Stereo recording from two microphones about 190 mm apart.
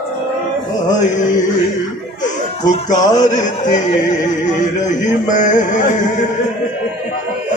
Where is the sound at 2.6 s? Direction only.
40° left (ahead or behind).